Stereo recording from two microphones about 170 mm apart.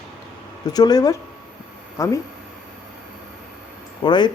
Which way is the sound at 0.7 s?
20° left (ahead or behind).